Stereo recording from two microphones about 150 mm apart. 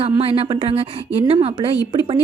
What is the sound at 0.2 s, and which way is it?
A woman's voice, 40° right (ahead or behind).